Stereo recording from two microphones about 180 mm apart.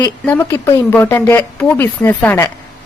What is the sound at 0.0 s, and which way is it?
A woman's voice, 10° left (ahead or behind).